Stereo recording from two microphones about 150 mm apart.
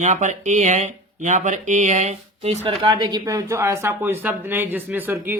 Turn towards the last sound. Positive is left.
turn(degrees=-10)  # may be behind; listen again after turning